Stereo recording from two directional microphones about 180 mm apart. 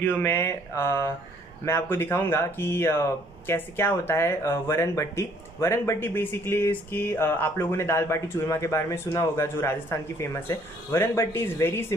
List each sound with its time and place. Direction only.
0.0 s speech: 15° left (ahead or behind)